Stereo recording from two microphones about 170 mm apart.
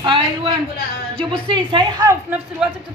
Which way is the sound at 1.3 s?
30° right (ahead or behind).